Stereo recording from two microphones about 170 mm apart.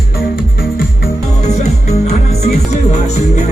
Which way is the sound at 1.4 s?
40° left (ahead or behind).